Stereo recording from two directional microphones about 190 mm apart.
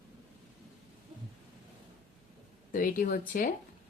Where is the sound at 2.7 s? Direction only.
45° left (ahead or behind).